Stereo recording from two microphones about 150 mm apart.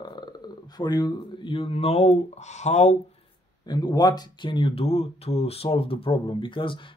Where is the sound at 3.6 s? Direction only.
30° left (ahead or behind).